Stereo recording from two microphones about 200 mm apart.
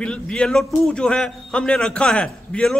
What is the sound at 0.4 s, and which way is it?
A man's voice, 5° left (ahead or behind).